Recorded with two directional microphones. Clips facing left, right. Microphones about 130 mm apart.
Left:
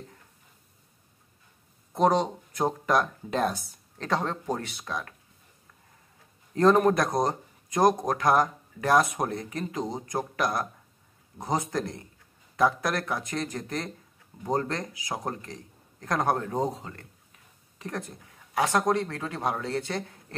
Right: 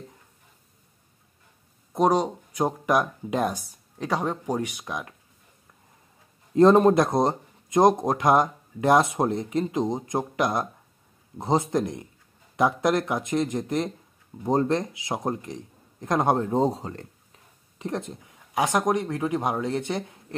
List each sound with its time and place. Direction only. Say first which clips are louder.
2.0 s speech: right 2 dB; 10° right (ahead or behind)
6.5 s speech: right 4 dB; 25° right (ahead or behind)
17.7 s speech: right 5 dB; 20° right (ahead or behind)